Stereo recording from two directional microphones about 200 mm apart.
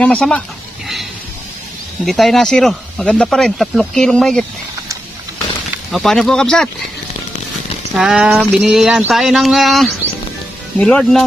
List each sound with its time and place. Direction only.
0.0 s speech: 5° left (ahead or behind)
2.0 s speech: centre (ahead or behind)
5.9 s speech: centre (ahead or behind)
7.9 s speech: 5° right (ahead or behind)